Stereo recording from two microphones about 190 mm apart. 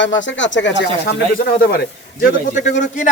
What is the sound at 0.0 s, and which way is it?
Speech, 75° left (ahead or behind).